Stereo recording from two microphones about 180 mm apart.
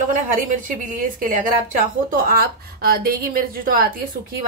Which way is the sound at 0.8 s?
50° right (ahead or behind).